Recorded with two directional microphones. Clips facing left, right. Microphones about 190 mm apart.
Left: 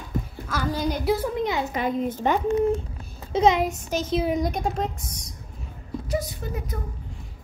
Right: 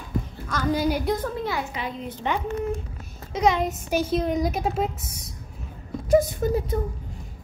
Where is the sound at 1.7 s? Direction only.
45° left (ahead or behind).